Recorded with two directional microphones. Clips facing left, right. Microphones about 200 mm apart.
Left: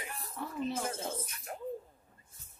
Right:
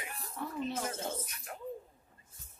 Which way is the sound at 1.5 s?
30° left (ahead or behind).